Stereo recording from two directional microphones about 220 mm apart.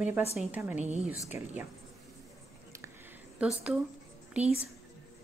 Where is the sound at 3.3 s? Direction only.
5° right (ahead or behind).